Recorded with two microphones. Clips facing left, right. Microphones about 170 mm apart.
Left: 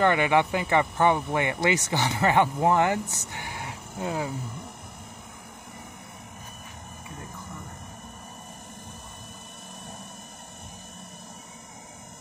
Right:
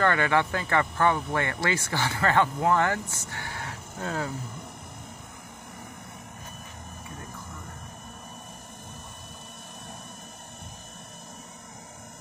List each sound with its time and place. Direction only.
0.0 s speech: 15° left (ahead or behind)